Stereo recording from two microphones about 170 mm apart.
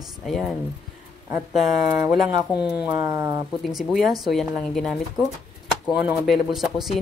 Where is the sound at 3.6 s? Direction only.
Centre (ahead or behind).